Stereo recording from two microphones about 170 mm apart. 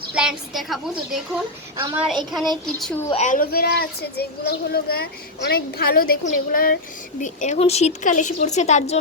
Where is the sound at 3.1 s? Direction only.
45° left (ahead or behind); by 6.7 s 60° left (ahead or behind).